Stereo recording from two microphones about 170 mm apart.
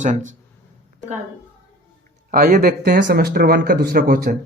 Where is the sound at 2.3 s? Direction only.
60° right (ahead or behind).